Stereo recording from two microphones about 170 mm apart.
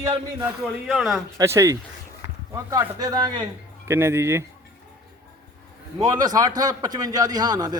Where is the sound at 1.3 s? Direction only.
15° right (ahead or behind).